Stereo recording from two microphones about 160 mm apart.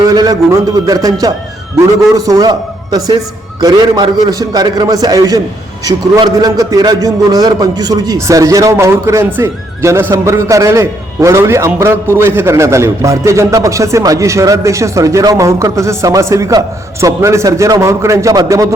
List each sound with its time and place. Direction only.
0.0 s a man's voice: 25° right (ahead or behind)